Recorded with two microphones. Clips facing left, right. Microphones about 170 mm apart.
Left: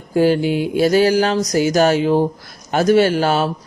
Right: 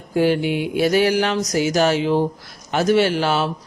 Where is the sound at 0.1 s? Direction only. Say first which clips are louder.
Left 3 dB; 40° left (ahead or behind).